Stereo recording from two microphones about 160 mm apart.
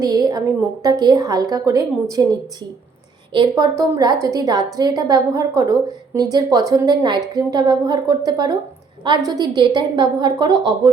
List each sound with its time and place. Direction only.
0.0 s a woman's voice: 25° right (ahead or behind)